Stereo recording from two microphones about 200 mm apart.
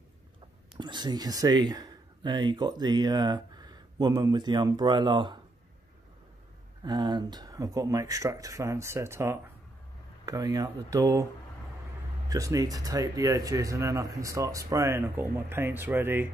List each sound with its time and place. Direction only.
0.7 s speech: 20° right (ahead or behind)
6.8 s speech: 20° right (ahead or behind)
12.3 s speech: 15° right (ahead or behind)